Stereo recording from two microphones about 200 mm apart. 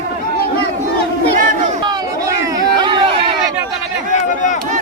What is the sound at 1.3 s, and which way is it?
Crowd, 40° right (ahead or behind).